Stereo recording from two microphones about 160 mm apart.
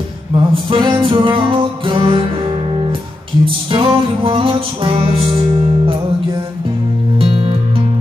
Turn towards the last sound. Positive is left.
turn(degrees=-35)  # may be behind; listen again after turning